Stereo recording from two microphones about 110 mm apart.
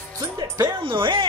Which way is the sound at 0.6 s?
40° right (ahead or behind).